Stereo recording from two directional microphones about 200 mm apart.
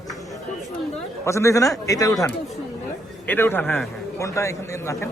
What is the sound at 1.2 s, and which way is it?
A man's voice, 15° left (ahead or behind).